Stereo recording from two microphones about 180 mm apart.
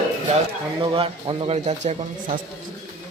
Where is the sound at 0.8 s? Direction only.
30° right (ahead or behind).